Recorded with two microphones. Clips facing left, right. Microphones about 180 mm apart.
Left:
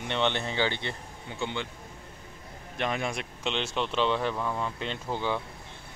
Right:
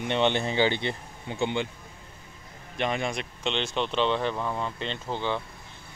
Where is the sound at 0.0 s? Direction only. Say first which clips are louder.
Right 4 dB; 15° right (ahead or behind).